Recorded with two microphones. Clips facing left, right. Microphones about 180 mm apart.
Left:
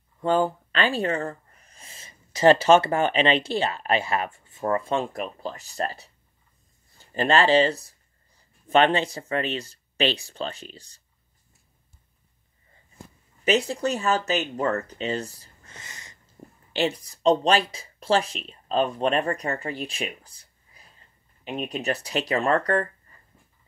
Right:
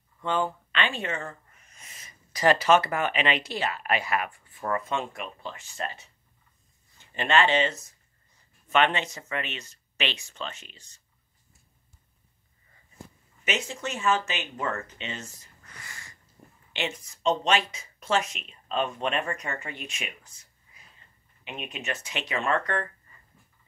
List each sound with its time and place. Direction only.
0.2 s speech: 35° left (ahead or behind)
13.4 s speech: 35° left (ahead or behind)
16.7 s speech: 35° left (ahead or behind)